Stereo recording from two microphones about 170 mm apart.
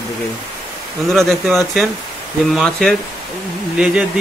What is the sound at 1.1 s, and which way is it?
Speech, centre (ahead or behind).